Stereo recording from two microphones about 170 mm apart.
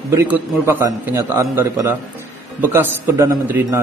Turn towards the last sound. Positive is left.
turn(degrees=-15)  # may be behind; listen again after turning